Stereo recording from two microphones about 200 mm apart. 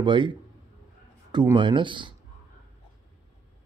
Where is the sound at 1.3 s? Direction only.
20° right (ahead or behind).